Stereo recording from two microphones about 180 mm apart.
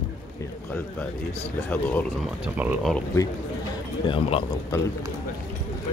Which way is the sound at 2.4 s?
10° right (ahead or behind).